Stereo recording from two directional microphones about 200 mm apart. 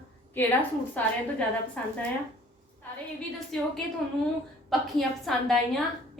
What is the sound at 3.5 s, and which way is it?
Speech, 5° left (ahead or behind).